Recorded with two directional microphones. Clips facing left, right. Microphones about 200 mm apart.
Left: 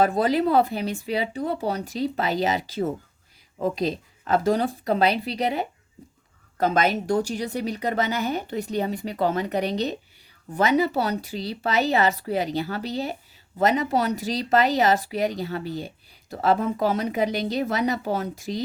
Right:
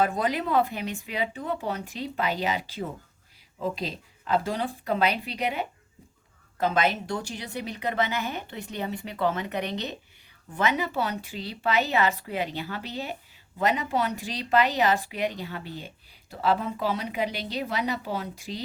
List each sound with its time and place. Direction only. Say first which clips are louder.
0.0 s a woman's voice: left 5 dB; 35° left (ahead or behind)